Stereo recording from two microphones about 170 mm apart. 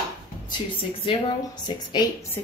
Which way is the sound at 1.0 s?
30° left (ahead or behind).